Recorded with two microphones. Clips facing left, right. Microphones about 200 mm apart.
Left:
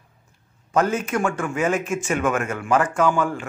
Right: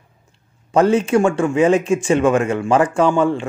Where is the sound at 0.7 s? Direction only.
30° right (ahead or behind).